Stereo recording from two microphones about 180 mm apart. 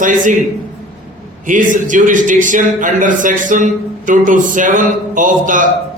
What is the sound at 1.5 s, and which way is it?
A man's voice, 45° right (ahead or behind).